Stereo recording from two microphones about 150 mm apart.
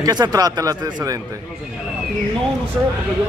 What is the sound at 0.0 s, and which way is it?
Speech, 25° right (ahead or behind).